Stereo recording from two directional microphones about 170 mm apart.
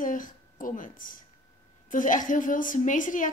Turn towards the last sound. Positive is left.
turn(degrees=50)  # may be behind; listen again after turning